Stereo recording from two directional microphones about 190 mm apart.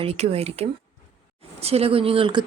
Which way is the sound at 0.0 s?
30° right (ahead or behind).